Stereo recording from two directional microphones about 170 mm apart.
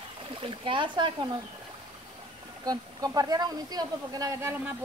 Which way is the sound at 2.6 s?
20° right (ahead or behind).